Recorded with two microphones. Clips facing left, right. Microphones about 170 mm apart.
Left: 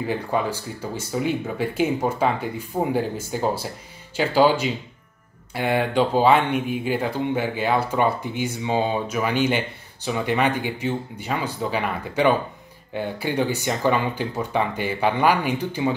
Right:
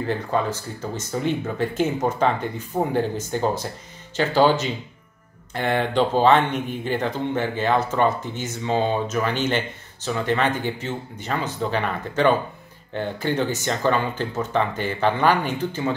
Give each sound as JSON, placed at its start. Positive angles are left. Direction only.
{"t": 0.0, "sound": "speech", "side_deg": 10}